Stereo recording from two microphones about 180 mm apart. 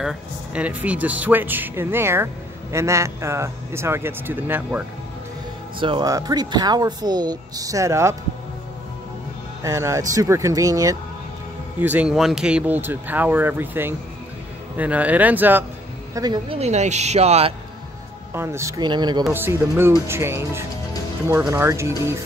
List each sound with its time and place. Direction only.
0.0 s speech: 5° right (ahead or behind)
5.8 s speech: 25° right (ahead or behind)
9.6 s speech: 15° right (ahead or behind)
11.8 s speech: 10° right (ahead or behind)
16.2 s speech: 25° right (ahead or behind)
16.5 s speech: 40° right (ahead or behind)
18.3 s speech: 15° right (ahead or behind)
19.3 s speech: 10° right (ahead or behind)